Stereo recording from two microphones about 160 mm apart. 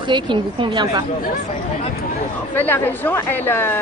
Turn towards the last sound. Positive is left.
turn(degrees=15)  # may be behind; listen again after turning